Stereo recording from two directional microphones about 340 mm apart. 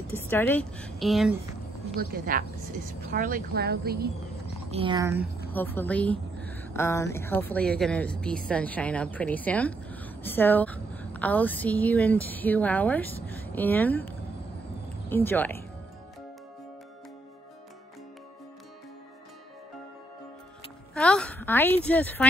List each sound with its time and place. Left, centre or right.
0.1 s a woman's voice: centre
2.0 s a woman's voice: right
4.6 s speech: centre
5.5 s a woman's voice: centre
20.9 s a sound: centre